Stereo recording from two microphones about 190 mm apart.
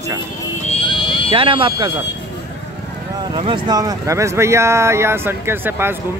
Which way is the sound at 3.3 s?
25° right (ahead or behind).